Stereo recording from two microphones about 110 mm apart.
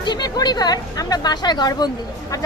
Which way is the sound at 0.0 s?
40° left (ahead or behind).